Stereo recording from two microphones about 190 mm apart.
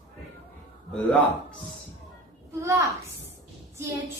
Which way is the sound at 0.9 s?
5° left (ahead or behind).